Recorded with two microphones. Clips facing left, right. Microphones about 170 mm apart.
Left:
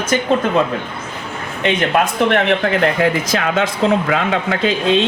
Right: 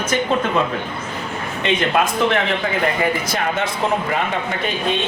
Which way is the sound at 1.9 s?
60° left (ahead or behind).